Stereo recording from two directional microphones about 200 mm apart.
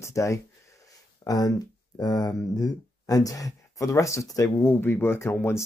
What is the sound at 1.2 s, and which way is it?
Speech, 20° left (ahead or behind).